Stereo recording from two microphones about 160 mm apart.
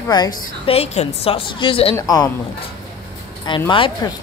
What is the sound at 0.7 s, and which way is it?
A woman's voice, 40° left (ahead or behind).